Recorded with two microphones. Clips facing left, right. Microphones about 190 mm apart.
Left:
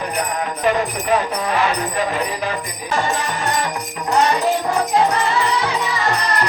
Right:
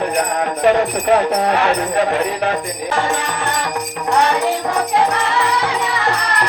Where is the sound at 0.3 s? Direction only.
60° right (ahead or behind).